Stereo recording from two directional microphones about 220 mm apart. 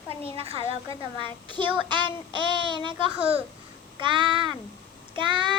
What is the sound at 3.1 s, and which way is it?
Speech, 5° right (ahead or behind).